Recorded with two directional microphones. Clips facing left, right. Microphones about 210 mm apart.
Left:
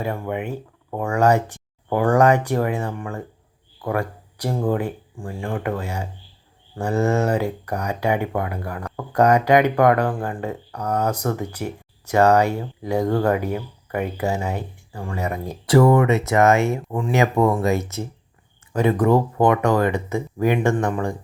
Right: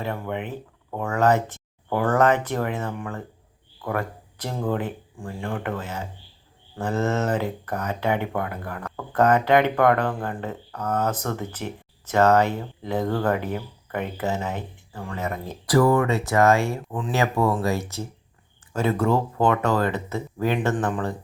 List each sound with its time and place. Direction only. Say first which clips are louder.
0.0 s speech: left 3 dB; 10° left (ahead or behind)
15.6 s speech: left 4 dB; 25° left (ahead or behind)